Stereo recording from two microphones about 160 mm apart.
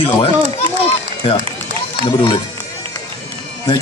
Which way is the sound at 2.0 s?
30° left (ahead or behind).